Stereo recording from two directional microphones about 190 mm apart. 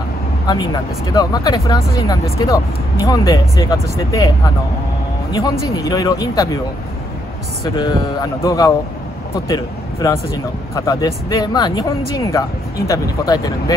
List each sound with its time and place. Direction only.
1.1 s speech: 20° left (ahead or behind)
5.3 s speech: 20° left (ahead or behind)
7.6 s speech: 20° left (ahead or behind)